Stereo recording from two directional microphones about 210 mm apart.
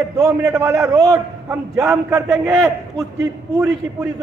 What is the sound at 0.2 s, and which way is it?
A man's voice, 15° right (ahead or behind).